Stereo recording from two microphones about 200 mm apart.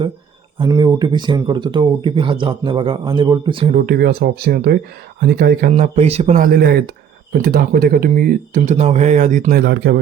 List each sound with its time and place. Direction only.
0.6 s speech: 20° right (ahead or behind)
3.8 s speech: 50° right (ahead or behind)